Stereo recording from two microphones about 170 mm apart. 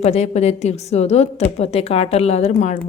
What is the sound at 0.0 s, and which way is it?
A woman's voice, 40° left (ahead or behind).